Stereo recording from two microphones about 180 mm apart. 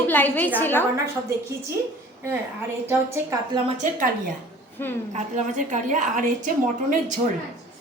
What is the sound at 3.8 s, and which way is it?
Speech, 45° right (ahead or behind).